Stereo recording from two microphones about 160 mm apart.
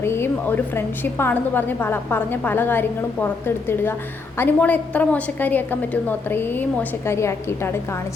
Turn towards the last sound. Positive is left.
turn(degrees=15)  # may be behind; listen again after turning